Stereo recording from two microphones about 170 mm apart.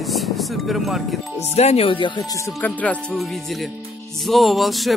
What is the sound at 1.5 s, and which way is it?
Speech, 35° left (ahead or behind).